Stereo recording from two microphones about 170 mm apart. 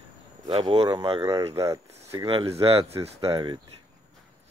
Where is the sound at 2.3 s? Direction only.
35° right (ahead or behind).